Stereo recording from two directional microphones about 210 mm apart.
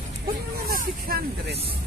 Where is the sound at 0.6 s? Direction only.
45° right (ahead or behind).